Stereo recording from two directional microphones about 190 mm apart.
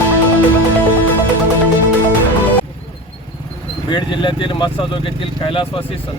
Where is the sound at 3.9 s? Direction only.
25° left (ahead or behind).